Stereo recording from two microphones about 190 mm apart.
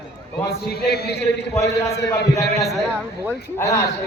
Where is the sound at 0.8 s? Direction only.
60° left (ahead or behind).